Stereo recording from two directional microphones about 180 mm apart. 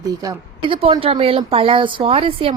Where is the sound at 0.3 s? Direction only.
30° right (ahead or behind).